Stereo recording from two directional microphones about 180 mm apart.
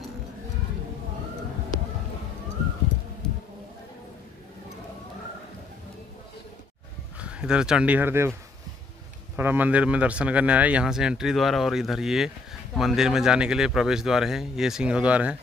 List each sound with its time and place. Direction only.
3.2 s a sound: 5° left (ahead or behind)
7.2 s speech: 5° right (ahead or behind)
9.4 s speech: 10° right (ahead or behind)